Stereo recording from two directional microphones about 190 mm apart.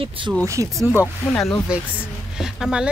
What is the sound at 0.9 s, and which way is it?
Speech, 15° left (ahead or behind).